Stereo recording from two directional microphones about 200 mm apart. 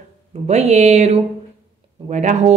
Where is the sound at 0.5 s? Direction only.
35° right (ahead or behind).